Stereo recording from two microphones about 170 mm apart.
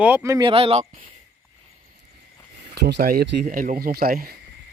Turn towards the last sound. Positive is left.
turn(degrees=-60)  # may be behind; listen again after turning